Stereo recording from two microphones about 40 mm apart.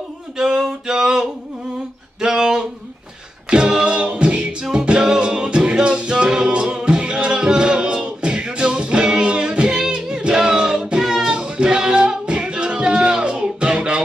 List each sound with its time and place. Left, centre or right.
0.4 s a sound: centre
3.4 s a capella: right
4.6 s music: right